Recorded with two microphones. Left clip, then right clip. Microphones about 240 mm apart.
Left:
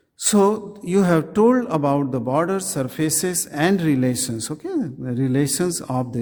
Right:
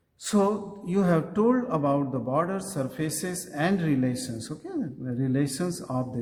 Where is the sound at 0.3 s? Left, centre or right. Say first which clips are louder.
Left 7 dB; left.